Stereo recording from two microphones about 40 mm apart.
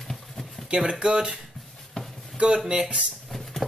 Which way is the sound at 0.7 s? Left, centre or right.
Right.